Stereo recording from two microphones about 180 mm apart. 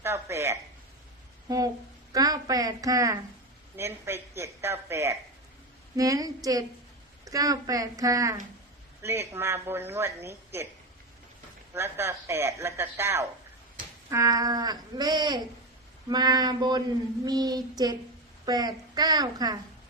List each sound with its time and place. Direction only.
0.0 s a man's voice: 15° right (ahead or behind)
11.7 s a man's voice: 15° right (ahead or behind)